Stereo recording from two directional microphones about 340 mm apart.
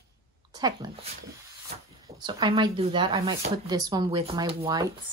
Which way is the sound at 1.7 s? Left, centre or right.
Right.